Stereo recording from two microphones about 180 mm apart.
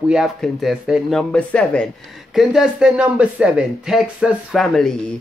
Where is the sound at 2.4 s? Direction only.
5° right (ahead or behind).